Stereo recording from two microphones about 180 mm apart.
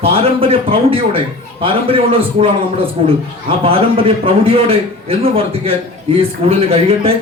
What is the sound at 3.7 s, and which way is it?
Speech, 30° right (ahead or behind).